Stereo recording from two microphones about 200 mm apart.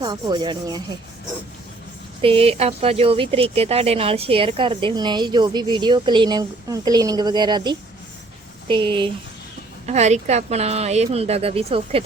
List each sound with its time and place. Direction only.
0.0 s speech: 20° right (ahead or behind)
2.2 s speech: 30° right (ahead or behind)
9.8 s speech: 35° right (ahead or behind)